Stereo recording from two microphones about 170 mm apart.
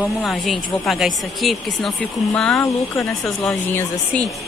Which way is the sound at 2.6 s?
15° left (ahead or behind).